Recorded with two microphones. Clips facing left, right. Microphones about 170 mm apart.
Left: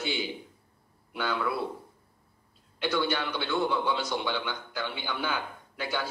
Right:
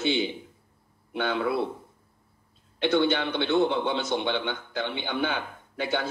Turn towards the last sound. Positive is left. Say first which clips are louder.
# right 4 dB
turn(degrees=-25)  # may be behind; listen again after turning